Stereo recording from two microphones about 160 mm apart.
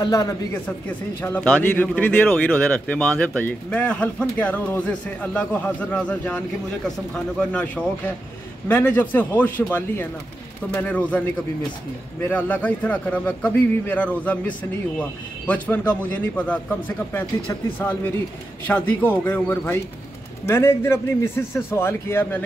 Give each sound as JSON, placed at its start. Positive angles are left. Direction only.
{"t": 0.0, "sound": "speech", "side_deg": 25}
{"t": 0.7, "sound": "speech", "side_deg": 10}
{"t": 12.3, "sound": "speech", "side_deg": 10}